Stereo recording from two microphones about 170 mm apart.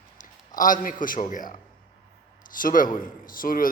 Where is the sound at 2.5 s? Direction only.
55° left (ahead or behind).